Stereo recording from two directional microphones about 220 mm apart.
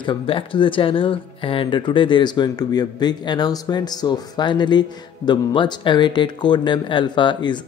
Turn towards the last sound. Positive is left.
turn(degrees=20)  # may be behind; listen again after turning